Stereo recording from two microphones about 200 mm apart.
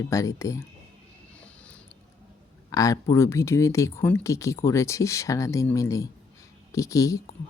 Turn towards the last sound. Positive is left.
turn(degrees=15)  # may be behind; listen again after turning